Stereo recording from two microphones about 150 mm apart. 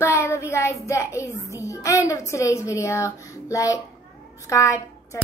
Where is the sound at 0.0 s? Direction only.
20° left (ahead or behind).